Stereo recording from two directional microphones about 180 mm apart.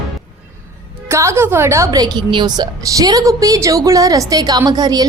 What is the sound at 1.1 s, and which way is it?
A woman's voice, 15° right (ahead or behind).